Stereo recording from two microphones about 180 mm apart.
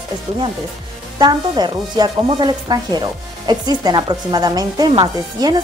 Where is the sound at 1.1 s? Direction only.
25° right (ahead or behind).